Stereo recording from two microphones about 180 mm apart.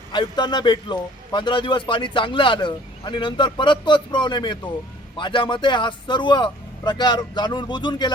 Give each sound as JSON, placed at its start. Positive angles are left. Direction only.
{"t": 0.1, "sound": "a man's voice", "side_deg": 25}